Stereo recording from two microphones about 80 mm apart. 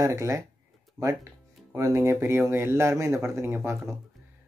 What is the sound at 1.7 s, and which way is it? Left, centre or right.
Speech, right.